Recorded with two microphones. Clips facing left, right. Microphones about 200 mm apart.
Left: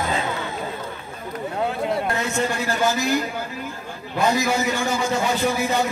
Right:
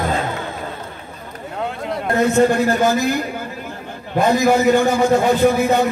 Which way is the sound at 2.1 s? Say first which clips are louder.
Right 10 dB; 55° right (ahead or behind).